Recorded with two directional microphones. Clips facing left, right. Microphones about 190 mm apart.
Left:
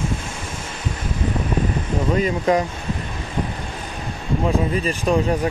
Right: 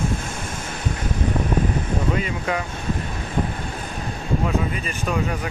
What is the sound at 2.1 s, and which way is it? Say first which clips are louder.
Speech: left 6 dB; 40° left (ahead or behind).